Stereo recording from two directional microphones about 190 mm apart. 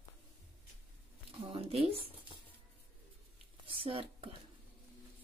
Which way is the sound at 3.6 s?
30° right (ahead or behind).